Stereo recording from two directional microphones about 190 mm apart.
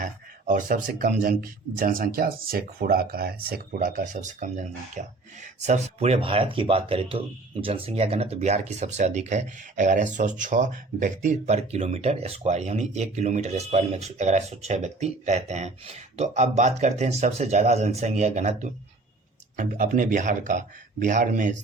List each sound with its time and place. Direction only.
0.0 s speech: 45° right (ahead or behind)